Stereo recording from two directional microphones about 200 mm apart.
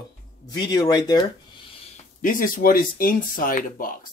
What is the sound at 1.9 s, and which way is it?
Speech, 40° left (ahead or behind).